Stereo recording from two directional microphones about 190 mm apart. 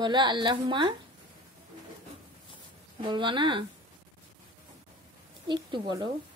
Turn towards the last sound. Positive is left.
turn(degrees=-25)  # may be behind; listen again after turning